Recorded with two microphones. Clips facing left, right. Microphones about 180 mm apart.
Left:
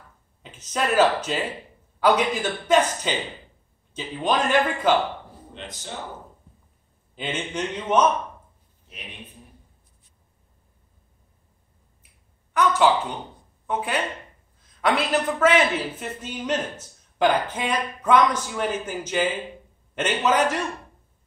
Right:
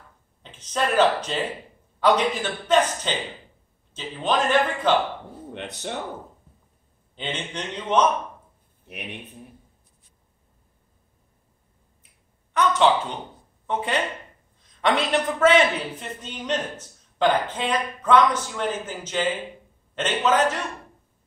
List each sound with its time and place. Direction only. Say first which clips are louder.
0.4 s a man's voice: right 1 dB; 10° left (ahead or behind)
5.5 s speech: right 5 dB; 65° right (ahead or behind)
7.2 s a man's voice: left 3 dB; 10° left (ahead or behind)
8.9 s a man's voice: right 7 dB; 65° right (ahead or behind)
12.5 s a man's voice: even; 10° left (ahead or behind)